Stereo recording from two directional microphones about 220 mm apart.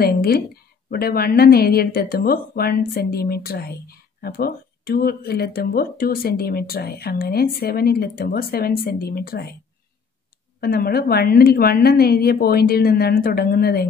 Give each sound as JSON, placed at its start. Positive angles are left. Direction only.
{"t": 0.0, "sound": "speech", "side_deg": 45}
{"t": 10.6, "sound": "speech", "side_deg": 45}